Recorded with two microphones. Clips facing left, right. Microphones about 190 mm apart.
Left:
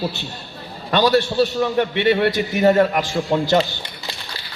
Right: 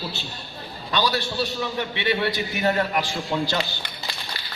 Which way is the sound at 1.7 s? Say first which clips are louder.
Left 8 dB; 50° left (ahead or behind).